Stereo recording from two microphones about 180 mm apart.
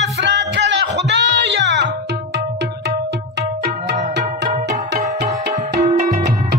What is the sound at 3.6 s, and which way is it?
Music, 70° right (ahead or behind).